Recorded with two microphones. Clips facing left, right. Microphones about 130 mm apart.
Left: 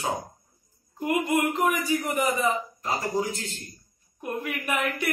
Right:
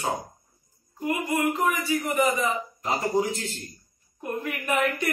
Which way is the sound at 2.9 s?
30° right (ahead or behind).